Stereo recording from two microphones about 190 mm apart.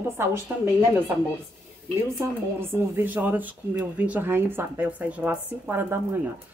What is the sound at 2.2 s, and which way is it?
Speech, 10° right (ahead or behind).